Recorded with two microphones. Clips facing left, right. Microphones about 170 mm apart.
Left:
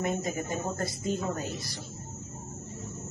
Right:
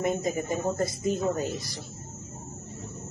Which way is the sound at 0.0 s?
20° right (ahead or behind).